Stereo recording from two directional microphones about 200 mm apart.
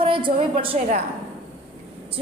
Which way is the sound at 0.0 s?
25° right (ahead or behind).